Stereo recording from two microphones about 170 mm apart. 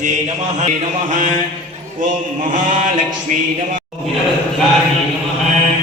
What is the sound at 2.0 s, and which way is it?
Music, 50° right (ahead or behind).